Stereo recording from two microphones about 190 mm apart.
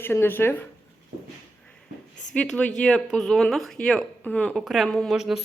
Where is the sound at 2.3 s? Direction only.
5° left (ahead or behind).